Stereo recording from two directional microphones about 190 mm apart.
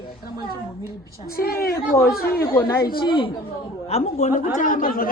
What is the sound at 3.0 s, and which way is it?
A woman's voice, 25° left (ahead or behind).